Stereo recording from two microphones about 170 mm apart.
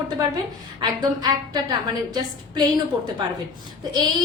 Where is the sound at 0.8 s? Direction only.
25° right (ahead or behind).